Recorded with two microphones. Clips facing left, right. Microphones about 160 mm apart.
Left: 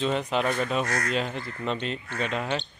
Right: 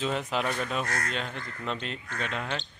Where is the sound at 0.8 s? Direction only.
40° left (ahead or behind).